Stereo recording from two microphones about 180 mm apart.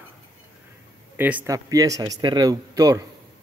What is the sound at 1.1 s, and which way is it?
A man's voice, 10° right (ahead or behind).